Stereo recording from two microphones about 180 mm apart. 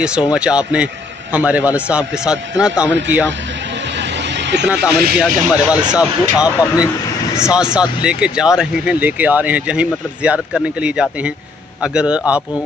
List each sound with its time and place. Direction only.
0.0 s a man's voice: 5° right (ahead or behind)
4.0 s a sound: 75° right (ahead or behind)
4.9 s speech: 55° right (ahead or behind)
5.2 s speech: 5° right (ahead or behind)